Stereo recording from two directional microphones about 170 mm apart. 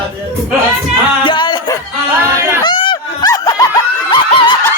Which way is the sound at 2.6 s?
25° left (ahead or behind).